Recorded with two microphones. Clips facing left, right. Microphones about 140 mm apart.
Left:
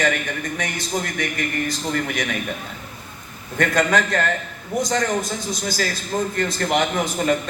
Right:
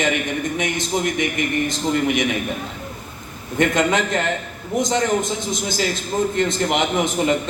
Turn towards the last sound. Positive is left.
turn(degrees=-20)  # may be behind; listen again after turning